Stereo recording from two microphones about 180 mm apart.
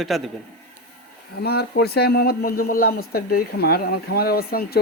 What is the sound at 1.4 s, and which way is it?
Speech, 60° left (ahead or behind).